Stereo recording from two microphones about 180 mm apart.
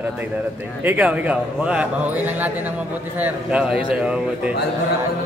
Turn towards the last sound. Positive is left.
turn(degrees=-5)  # may be behind; listen again after turning